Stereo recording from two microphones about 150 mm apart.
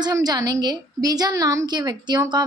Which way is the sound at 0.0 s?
25° right (ahead or behind).